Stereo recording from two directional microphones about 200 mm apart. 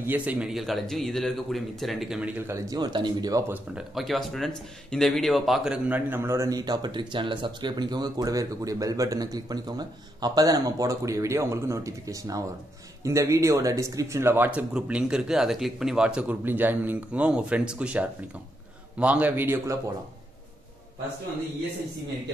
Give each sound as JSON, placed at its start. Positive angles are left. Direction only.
{"t": 0.0, "sound": "speech", "side_deg": -10}
{"t": 3.7, "sound": "a man's voice", "side_deg": 0}